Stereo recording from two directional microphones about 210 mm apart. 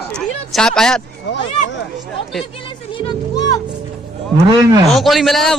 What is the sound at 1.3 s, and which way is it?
Speech, 55° left (ahead or behind).